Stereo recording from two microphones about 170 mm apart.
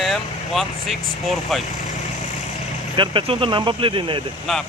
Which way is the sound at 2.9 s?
30° right (ahead or behind).